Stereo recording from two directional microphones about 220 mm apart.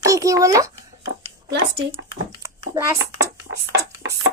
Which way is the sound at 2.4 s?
15° right (ahead or behind).